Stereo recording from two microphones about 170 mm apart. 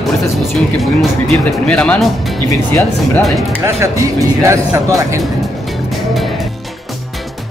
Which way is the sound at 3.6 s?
15° right (ahead or behind).